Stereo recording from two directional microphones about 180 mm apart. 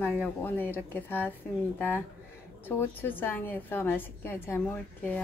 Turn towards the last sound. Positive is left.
turn(degrees=10)  # may be behind; listen again after turning